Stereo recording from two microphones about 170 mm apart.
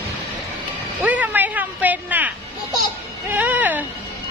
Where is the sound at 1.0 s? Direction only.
10° right (ahead or behind).